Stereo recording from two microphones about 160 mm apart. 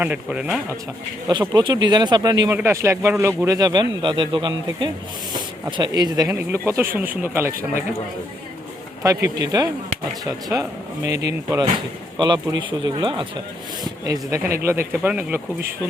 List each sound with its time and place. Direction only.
0.0 s speech: 10° right (ahead or behind)
1.3 s speech: 25° right (ahead or behind)
2.5 s speech: 15° right (ahead or behind)
9.0 s speech: 25° right (ahead or behind)